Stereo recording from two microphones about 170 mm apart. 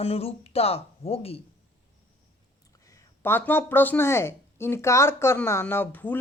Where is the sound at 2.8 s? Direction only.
15° left (ahead or behind).